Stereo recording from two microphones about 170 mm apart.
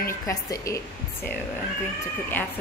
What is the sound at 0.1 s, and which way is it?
Speech, 20° left (ahead or behind).